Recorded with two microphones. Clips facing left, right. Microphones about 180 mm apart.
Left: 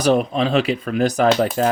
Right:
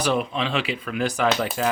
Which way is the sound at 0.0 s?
40° left (ahead or behind).